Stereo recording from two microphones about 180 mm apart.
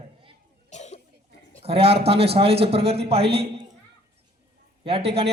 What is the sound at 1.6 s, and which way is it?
A man's voice, 35° right (ahead or behind).